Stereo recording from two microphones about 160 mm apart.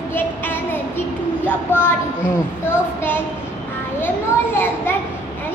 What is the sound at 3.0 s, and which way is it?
Speech, 15° left (ahead or behind).